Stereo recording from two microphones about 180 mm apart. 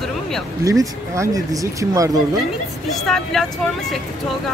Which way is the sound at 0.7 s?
15° right (ahead or behind).